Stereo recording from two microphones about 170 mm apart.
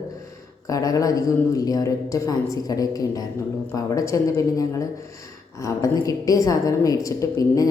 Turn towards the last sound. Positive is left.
turn(degrees=20)  # may be behind; listen again after turning